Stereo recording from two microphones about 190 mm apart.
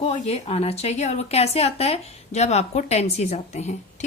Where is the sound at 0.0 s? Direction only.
30° left (ahead or behind).